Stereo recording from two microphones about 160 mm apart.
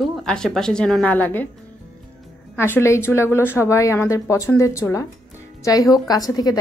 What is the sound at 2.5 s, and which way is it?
A woman's voice, 15° left (ahead or behind).